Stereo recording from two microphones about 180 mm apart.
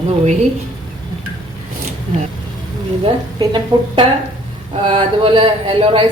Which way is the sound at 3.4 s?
25° right (ahead or behind).